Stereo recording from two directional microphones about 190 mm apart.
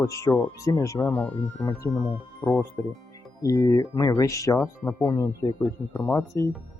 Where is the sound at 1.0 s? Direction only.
5° left (ahead or behind).